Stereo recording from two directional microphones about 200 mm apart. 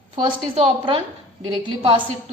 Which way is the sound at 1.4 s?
20° right (ahead or behind).